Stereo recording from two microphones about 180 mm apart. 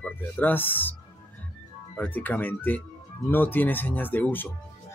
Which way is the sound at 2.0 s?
10° left (ahead or behind).